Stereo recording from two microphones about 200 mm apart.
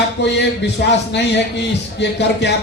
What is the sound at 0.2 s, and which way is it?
Speech, 60° left (ahead or behind).